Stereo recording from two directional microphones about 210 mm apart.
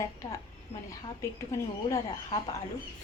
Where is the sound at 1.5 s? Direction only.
15° left (ahead or behind).